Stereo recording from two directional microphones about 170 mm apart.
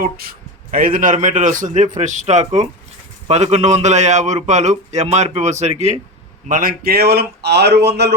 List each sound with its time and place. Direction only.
0.0 s a man's voice: 60° right (ahead or behind); by 6.0 s 40° right (ahead or behind)
6.5 s speech: 55° right (ahead or behind); by 8.1 s 80° right